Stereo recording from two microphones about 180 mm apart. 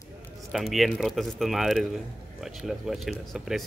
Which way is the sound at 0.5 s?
Centre (ahead or behind).